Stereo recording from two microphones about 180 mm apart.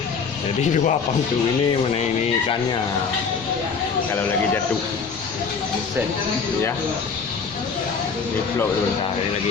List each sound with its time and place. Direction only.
0.6 s speech: 40° left (ahead or behind)